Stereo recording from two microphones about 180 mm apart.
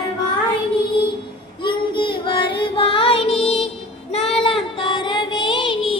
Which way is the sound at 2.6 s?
30° left (ahead or behind).